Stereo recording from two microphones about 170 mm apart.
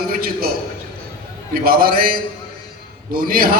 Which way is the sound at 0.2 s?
60° right (ahead or behind).